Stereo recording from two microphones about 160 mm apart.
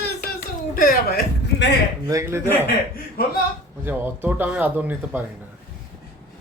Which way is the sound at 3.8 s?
10° right (ahead or behind).